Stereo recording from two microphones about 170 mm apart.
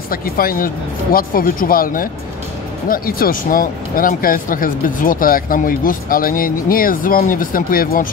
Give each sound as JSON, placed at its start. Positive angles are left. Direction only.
{"t": 0.1, "sound": "speech", "side_deg": 60}